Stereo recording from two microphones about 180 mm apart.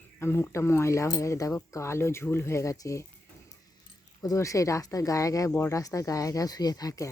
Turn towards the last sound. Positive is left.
turn(degrees=20)  # may be behind; listen again after turning